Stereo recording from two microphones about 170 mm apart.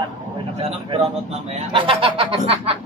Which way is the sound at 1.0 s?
40° right (ahead or behind).